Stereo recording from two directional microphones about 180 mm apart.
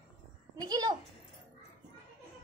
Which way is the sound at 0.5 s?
20° right (ahead or behind).